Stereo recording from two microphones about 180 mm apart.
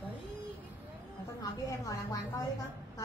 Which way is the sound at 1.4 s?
20° left (ahead or behind).